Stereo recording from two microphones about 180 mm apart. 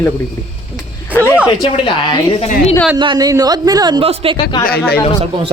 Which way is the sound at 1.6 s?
25° left (ahead or behind).